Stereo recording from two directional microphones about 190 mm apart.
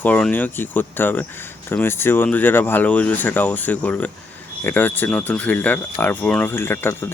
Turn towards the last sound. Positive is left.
turn(degrees=10)  # may be behind; listen again after turning